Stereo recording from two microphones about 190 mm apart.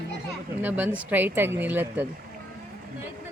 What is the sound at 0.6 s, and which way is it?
Speech, 10° right (ahead or behind).